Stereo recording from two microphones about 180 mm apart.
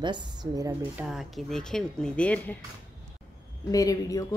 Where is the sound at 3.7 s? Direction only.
20° left (ahead or behind).